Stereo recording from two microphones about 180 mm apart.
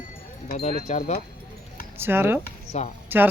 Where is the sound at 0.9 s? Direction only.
45° left (ahead or behind).